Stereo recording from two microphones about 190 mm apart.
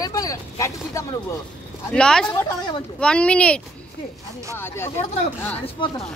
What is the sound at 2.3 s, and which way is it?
Speech, 20° left (ahead or behind).